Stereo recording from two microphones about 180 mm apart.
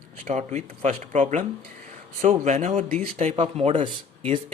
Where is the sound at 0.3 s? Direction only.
40° right (ahead or behind).